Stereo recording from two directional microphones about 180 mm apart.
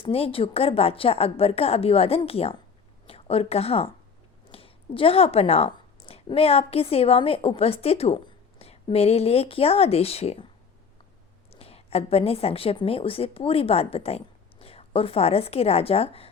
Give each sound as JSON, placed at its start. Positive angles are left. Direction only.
{"t": 0.0, "sound": "a woman's voice", "side_deg": 30}
{"t": 11.5, "sound": "a woman's voice", "side_deg": 35}